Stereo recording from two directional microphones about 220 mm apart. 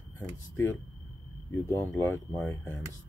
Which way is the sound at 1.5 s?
10° left (ahead or behind).